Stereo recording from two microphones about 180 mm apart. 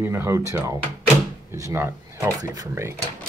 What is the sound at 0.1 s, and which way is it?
A man's voice, 15° right (ahead or behind).